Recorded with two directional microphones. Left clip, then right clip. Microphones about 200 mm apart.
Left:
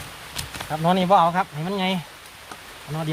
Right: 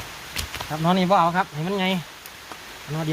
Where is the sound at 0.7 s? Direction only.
30° left (ahead or behind).